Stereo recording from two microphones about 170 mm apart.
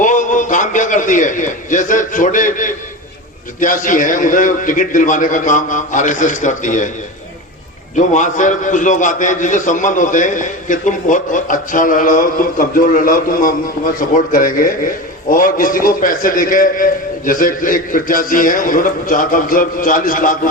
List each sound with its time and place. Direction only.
0.0 s a sound: 50° left (ahead or behind)
3.6 s a man's voice: 50° left (ahead or behind)
7.9 s a man's voice: 45° left (ahead or behind)